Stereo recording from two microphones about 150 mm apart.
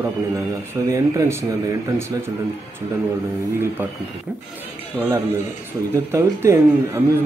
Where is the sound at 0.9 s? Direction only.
20° right (ahead or behind).